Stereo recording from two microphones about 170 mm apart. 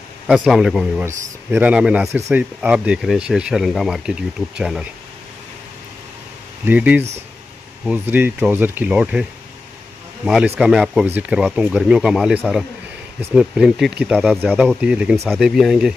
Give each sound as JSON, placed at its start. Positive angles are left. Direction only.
{"t": 0.3, "sound": "speech", "side_deg": 0}
{"t": 6.6, "sound": "speech", "side_deg": -10}
{"t": 10.2, "sound": "speech", "side_deg": -5}
{"t": 14.4, "sound": "speech", "side_deg": -10}